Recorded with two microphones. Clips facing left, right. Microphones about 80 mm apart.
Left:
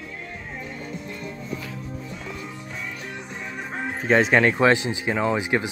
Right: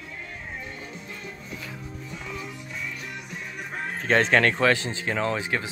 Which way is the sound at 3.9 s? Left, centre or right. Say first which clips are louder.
Left 2 dB; centre.